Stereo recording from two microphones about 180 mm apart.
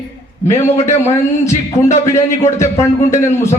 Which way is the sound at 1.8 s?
15° left (ahead or behind).